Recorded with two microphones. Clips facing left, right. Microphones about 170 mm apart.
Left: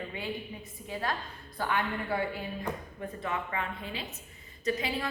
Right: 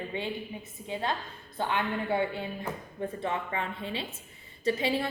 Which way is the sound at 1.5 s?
25° right (ahead or behind).